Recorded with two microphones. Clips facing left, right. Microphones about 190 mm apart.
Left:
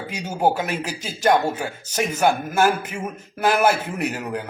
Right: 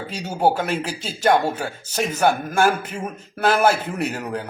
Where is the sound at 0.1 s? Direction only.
10° left (ahead or behind).